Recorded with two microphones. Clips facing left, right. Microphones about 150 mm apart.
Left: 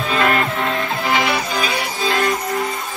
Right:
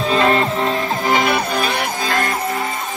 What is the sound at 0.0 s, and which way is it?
Music, 30° right (ahead or behind).